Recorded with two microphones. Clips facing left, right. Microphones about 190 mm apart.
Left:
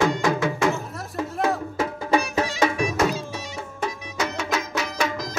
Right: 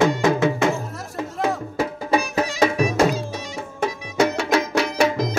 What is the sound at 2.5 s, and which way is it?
Music, 30° right (ahead or behind).